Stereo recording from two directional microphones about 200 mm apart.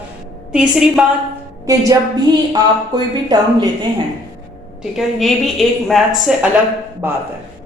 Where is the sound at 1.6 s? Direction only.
15° right (ahead or behind).